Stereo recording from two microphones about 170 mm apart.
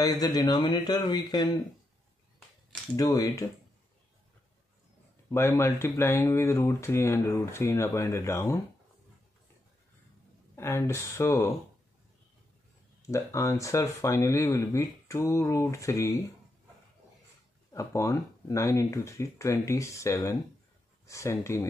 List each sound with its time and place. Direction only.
0.0 s speech: 20° left (ahead or behind)
3.0 s speech: 20° left (ahead or behind)
5.3 s speech: 15° left (ahead or behind)
10.5 s speech: 15° left (ahead or behind)
13.0 s speech: 15° left (ahead or behind)
17.7 s speech: 20° left (ahead or behind)